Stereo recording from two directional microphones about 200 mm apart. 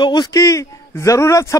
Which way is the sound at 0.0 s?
20° left (ahead or behind).